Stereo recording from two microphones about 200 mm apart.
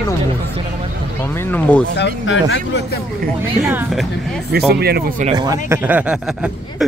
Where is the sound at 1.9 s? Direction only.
65° left (ahead or behind).